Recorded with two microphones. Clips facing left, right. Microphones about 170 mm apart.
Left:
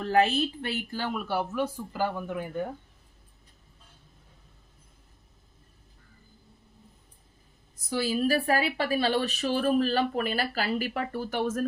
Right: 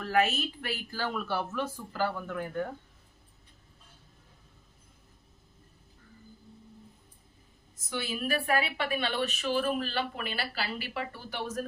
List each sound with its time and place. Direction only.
0.0 s a woman's voice: 30° left (ahead or behind)
7.9 s a woman's voice: 35° left (ahead or behind)